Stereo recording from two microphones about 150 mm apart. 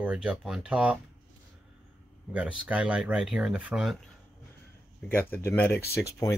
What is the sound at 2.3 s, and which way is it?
Speech, 5° right (ahead or behind).